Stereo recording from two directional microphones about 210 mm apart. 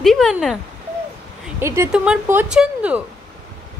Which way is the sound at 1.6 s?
10° right (ahead or behind).